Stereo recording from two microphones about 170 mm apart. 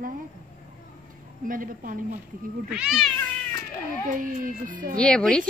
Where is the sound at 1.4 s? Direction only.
55° right (ahead or behind).